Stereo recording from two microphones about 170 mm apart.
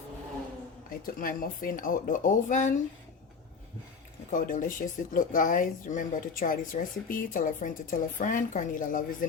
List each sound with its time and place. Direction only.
0.9 s speech: 55° left (ahead or behind)
4.3 s speech: 50° left (ahead or behind)